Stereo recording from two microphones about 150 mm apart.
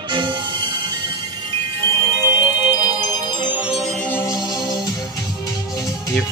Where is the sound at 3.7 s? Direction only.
5° left (ahead or behind); by 6.1 s 20° left (ahead or behind).